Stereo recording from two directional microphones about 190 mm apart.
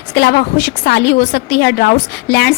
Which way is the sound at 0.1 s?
60° left (ahead or behind).